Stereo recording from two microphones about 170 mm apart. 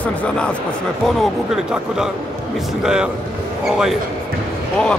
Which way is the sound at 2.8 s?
5° right (ahead or behind).